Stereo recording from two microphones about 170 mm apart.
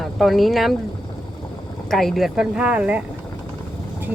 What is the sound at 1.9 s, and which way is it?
Speech, centre (ahead or behind).